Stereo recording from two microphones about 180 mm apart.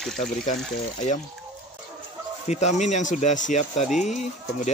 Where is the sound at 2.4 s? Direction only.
40° left (ahead or behind).